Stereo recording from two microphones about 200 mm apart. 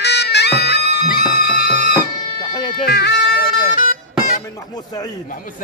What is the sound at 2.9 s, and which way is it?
Music, 55° left (ahead or behind).